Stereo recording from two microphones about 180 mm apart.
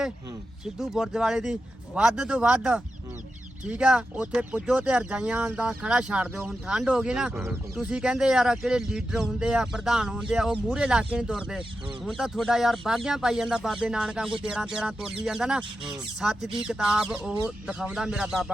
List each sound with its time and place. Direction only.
0.6 s speech: 5° right (ahead or behind)